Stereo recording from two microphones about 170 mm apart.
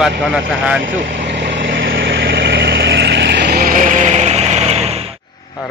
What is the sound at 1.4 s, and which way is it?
Vehicle, 90° right.